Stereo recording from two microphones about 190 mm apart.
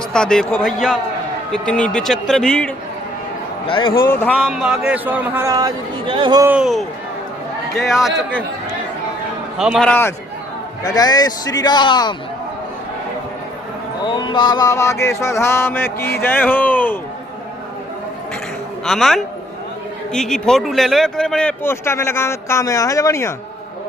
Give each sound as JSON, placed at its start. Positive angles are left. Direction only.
{"t": 0.1, "sound": "a man's voice", "side_deg": 5}
{"t": 3.7, "sound": "a man's voice", "side_deg": 25}
{"t": 4.2, "sound": "speech", "side_deg": 5}
{"t": 4.4, "sound": "speech", "side_deg": -5}
{"t": 6.4, "sound": "a man's voice", "side_deg": -5}
{"t": 7.9, "sound": "a man's voice", "side_deg": 0}
{"t": 9.6, "sound": "a man's voice", "side_deg": 0}
{"t": 14.0, "sound": "speech", "side_deg": 25}
{"t": 18.9, "sound": "a man's voice", "side_deg": 0}